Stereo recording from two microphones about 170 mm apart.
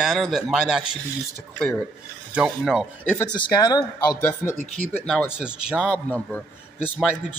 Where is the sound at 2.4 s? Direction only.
5° right (ahead or behind).